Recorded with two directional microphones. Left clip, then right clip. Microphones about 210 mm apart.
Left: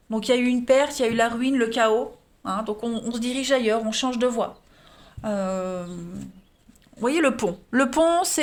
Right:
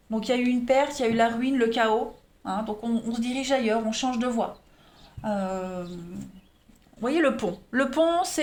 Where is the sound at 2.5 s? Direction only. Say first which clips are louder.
Left 2 dB; 50° left (ahead or behind).